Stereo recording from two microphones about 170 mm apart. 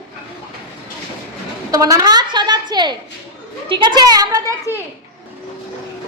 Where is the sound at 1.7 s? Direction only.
20° right (ahead or behind).